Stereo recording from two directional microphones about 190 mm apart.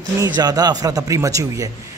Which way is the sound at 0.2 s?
20° right (ahead or behind).